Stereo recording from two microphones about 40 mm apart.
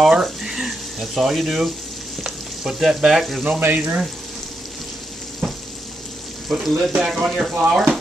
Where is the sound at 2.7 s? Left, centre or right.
Centre.